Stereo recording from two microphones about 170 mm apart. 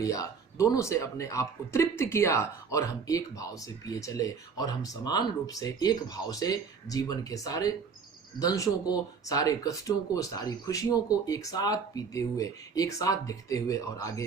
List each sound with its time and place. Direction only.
0.0 s speech: 20° left (ahead or behind)